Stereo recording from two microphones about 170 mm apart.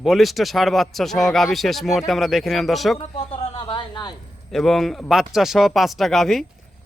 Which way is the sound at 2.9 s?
30° left (ahead or behind).